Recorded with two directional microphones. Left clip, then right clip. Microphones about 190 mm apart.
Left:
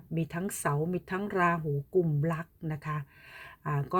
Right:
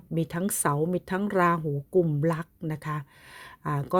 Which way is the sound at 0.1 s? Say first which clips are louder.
Right 5 dB; 30° right (ahead or behind).